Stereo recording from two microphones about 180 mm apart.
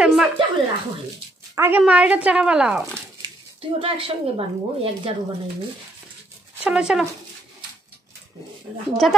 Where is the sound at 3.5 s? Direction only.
30° right (ahead or behind).